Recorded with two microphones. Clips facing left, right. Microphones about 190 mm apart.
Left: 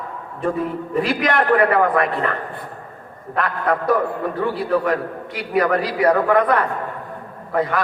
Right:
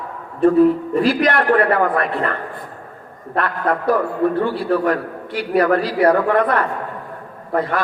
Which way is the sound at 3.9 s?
30° right (ahead or behind).